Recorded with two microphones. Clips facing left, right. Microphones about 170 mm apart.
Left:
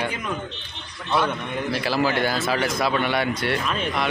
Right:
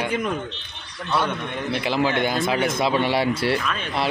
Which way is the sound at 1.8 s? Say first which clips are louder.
Right 1 dB; 20° right (ahead or behind).